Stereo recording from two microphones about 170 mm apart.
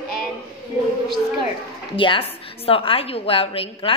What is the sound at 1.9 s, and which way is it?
A woman's voice, 30° left (ahead or behind).